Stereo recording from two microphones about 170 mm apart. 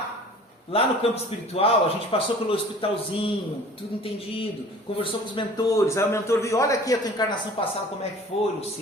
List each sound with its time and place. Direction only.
0.7 s a man's voice: 35° left (ahead or behind)
5.3 s a man's voice: 25° left (ahead or behind)
8.3 s a man's voice: 35° left (ahead or behind)